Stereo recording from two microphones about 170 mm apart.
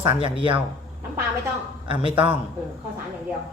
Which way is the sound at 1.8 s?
30° right (ahead or behind).